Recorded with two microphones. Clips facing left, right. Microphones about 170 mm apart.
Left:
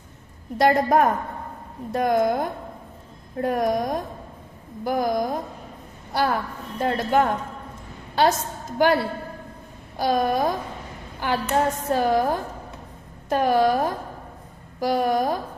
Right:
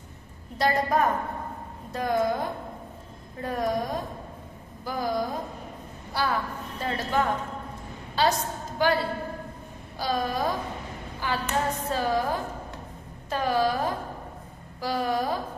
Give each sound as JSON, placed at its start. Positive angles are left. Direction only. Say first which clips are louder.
{"t": 0.6, "sound": "a woman's voice", "louder": "left 6 dB", "side_deg": 50}
{"t": 6.1, "sound": "a woman's voice", "louder": "left 4 dB", "side_deg": 55}
{"t": 9.9, "sound": "a woman's voice", "louder": "left 6 dB", "side_deg": 50}
{"t": 14.9, "sound": "a woman's voice", "louder": "left 5 dB", "side_deg": 50}